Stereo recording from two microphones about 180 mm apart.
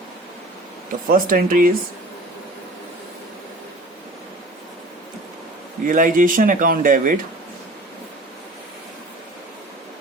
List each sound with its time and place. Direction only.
1.0 s speech: 50° right (ahead or behind)
5.8 s speech: 50° right (ahead or behind)